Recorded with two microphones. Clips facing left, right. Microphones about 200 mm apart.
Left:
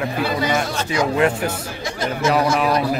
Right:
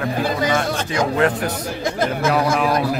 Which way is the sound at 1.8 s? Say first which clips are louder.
Right 3 dB; 55° right (ahead or behind).